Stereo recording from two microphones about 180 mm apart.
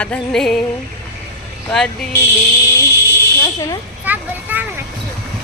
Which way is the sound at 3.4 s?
15° left (ahead or behind).